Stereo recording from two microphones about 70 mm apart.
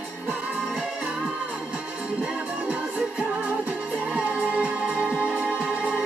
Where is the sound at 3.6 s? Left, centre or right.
Right.